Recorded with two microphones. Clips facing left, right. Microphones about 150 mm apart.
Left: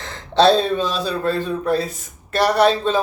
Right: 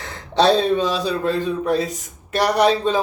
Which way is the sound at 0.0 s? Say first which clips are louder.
Left 2 dB; 10° right (ahead or behind).